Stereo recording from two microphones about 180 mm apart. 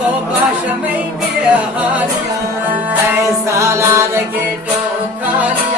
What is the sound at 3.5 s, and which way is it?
Music, 15° right (ahead or behind).